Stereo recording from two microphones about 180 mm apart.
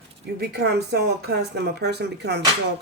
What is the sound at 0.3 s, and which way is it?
Speech, 65° right (ahead or behind).